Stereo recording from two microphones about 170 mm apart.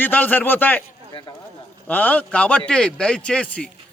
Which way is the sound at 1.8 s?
10° left (ahead or behind).